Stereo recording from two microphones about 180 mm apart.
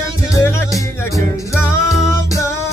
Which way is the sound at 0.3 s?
15° left (ahead or behind).